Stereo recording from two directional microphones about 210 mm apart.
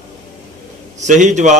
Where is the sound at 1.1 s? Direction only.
35° right (ahead or behind).